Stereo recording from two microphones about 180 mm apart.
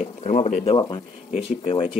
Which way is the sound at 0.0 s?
45° left (ahead or behind).